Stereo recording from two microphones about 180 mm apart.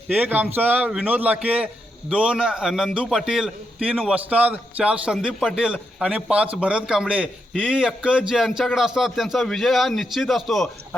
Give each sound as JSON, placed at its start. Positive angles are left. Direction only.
{"t": 0.2, "sound": "a man's voice", "side_deg": -10}